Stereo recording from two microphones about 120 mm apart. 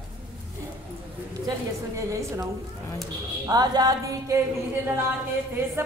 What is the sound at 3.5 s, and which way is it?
Music, 30° right (ahead or behind).